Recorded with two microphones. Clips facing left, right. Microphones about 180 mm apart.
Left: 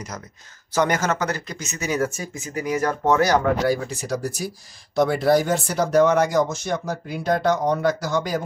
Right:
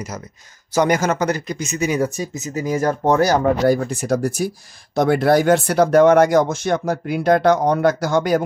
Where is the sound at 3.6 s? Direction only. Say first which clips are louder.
Right 5 dB; 50° right (ahead or behind); by 8.4 s 65° right (ahead or behind).